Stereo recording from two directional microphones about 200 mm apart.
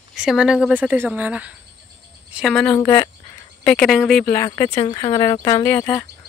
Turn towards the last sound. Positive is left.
turn(degrees=10)  # may be behind; listen again after turning